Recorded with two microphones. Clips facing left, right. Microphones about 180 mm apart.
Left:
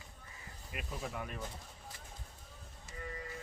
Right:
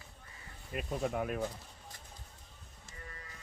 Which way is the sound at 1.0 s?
55° right (ahead or behind).